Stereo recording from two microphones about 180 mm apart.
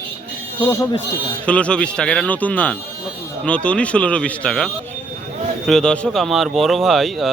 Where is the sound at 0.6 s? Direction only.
10° left (ahead or behind).